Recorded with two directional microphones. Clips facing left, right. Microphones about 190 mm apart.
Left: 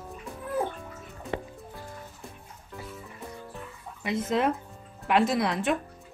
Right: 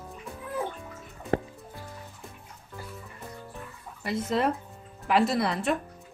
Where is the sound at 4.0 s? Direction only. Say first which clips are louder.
Left 1 dB; centre (ahead or behind).